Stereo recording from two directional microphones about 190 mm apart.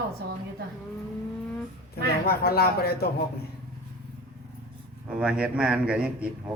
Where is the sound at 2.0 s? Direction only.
55° left (ahead or behind).